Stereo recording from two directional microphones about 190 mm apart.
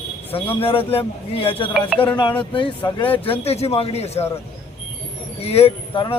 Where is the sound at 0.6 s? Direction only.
30° left (ahead or behind).